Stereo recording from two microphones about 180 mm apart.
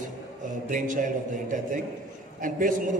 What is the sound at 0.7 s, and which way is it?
A man's voice, 45° right (ahead or behind).